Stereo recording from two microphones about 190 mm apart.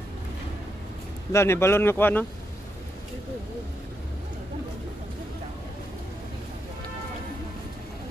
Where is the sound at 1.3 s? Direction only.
15° left (ahead or behind).